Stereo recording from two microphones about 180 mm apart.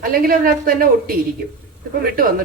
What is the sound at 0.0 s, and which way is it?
A woman's voice, 55° right (ahead or behind).